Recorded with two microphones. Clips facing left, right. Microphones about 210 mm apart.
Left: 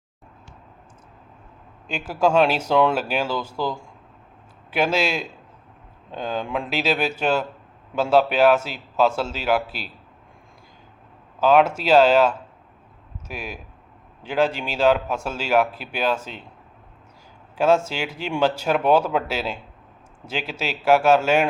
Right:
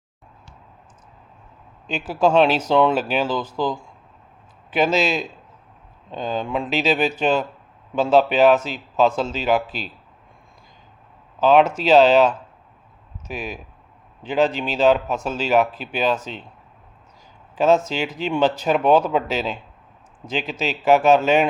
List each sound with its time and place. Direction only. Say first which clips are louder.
1.9 s speech: right 2 dB; 10° left (ahead or behind)
3.5 s speech: right 3 dB; 15° right (ahead or behind)
4.7 s speech: right 2 dB; 10° left (ahead or behind)
11.3 s speech: right 2 dB; 10° left (ahead or behind)
17.5 s a sound: right 1 dB; 10° left (ahead or behind)
17.8 s speech: right 4 dB; 10° left (ahead or behind)